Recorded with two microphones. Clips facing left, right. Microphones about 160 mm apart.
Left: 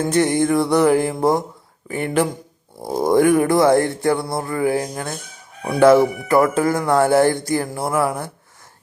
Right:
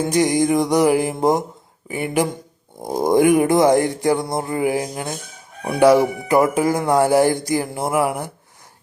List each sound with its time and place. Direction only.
0.0 s speech: 15° right (ahead or behind)